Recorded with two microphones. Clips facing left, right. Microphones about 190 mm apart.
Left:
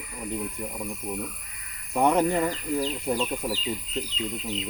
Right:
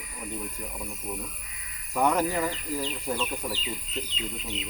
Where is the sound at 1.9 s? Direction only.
25° left (ahead or behind).